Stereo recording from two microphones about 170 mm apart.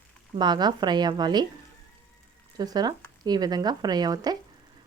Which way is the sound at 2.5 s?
25° right (ahead or behind).